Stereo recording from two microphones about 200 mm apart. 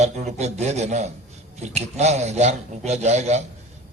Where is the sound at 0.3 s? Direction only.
35° right (ahead or behind).